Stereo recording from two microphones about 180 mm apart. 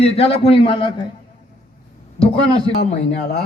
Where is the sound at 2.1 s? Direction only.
30° left (ahead or behind).